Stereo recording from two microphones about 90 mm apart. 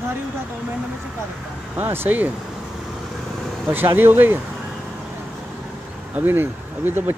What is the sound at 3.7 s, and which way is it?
Speech, 25° right (ahead or behind).